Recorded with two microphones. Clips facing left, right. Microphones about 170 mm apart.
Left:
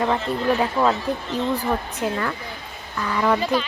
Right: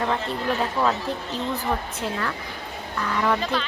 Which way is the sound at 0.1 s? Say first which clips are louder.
Left 4 dB; 10° left (ahead or behind).